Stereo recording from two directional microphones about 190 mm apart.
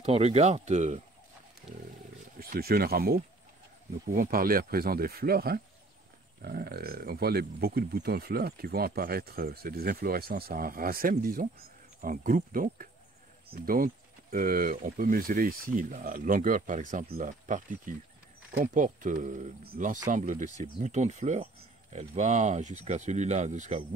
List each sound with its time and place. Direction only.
0.0 s speech: 35° right (ahead or behind)
2.3 s speech: 50° right (ahead or behind)